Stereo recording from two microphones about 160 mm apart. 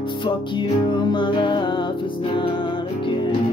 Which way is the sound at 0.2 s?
30° left (ahead or behind).